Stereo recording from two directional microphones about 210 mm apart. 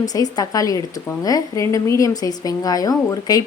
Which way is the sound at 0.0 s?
20° left (ahead or behind).